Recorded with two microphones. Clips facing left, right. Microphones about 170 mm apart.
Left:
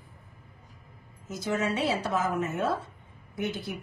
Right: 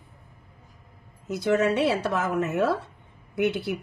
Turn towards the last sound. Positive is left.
turn(degrees=-70)  # may be behind; listen again after turning